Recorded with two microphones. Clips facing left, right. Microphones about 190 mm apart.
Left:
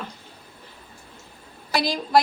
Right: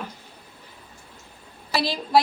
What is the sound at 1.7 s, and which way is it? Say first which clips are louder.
Speech: left 1 dB; 5° right (ahead or behind).